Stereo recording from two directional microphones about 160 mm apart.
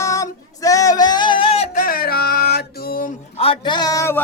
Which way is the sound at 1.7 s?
65° left (ahead or behind).